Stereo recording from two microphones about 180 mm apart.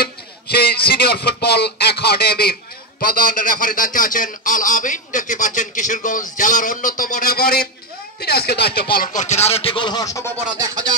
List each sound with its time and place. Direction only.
0.0 s a sound: 60° left (ahead or behind)
3.0 s a man's voice: 55° left (ahead or behind); by 10.3 s 20° left (ahead or behind)
10.3 s music: 20° right (ahead or behind)